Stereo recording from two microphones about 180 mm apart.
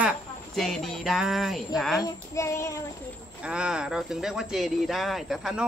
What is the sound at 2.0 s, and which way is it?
Child singing, 20° left (ahead or behind).